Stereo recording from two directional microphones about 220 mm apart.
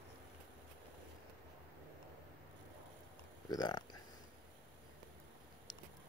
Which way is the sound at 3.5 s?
20° left (ahead or behind).